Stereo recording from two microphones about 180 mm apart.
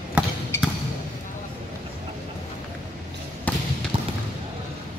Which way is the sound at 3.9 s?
30° right (ahead or behind).